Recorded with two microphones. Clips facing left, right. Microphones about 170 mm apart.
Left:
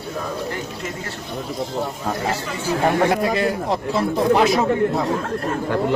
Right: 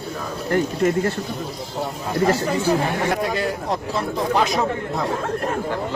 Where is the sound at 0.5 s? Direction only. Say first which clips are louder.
Right 10 dB; 55° right (ahead or behind).